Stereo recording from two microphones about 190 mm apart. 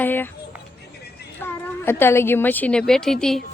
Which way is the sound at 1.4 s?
10° left (ahead or behind).